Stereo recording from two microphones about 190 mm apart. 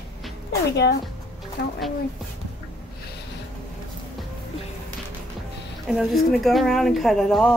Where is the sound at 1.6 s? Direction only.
65° left (ahead or behind).